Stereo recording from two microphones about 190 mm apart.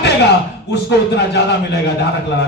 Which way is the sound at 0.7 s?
60° left (ahead or behind).